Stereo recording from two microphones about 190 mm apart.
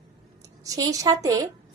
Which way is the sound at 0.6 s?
20° right (ahead or behind).